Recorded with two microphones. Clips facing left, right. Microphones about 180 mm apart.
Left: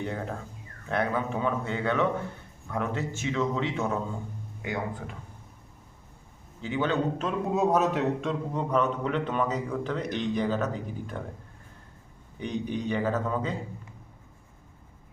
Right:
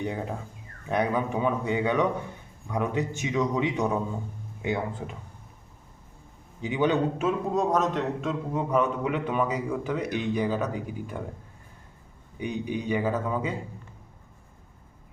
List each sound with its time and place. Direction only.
0.0 s a man's voice: 15° right (ahead or behind)
6.6 s a man's voice: 15° right (ahead or behind)
7.5 s a man's voice: 5° left (ahead or behind); by 11.2 s 10° right (ahead or behind)
12.4 s a man's voice: 10° right (ahead or behind)